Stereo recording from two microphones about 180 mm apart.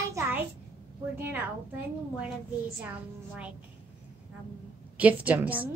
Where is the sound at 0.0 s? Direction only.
15° right (ahead or behind).